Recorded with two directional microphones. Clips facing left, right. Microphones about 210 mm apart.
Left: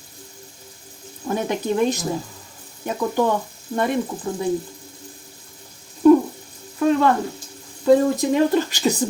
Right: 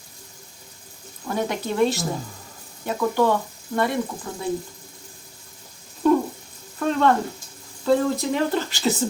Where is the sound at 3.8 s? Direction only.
20° left (ahead or behind).